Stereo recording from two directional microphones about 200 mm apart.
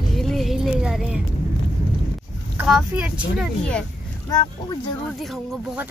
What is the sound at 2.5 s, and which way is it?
Speech, 5° right (ahead or behind).